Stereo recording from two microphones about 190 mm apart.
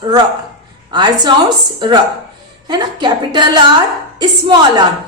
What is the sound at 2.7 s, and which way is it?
Speech, 25° right (ahead or behind).